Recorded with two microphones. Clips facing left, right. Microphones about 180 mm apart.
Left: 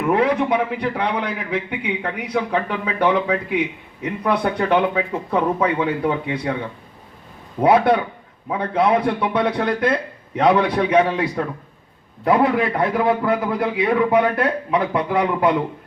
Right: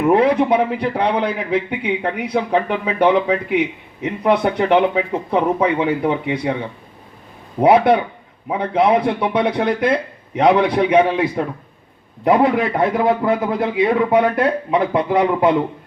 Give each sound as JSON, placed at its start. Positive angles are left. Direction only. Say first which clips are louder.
{"t": 0.0, "sound": "a man's voice", "louder": "right 4 dB", "side_deg": -25}